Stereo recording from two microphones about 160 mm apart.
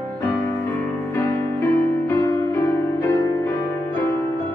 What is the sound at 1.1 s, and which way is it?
Music, 15° left (ahead or behind).